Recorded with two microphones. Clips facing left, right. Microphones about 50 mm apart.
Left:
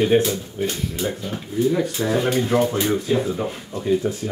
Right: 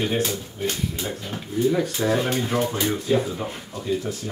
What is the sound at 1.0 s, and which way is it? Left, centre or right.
Speech, centre.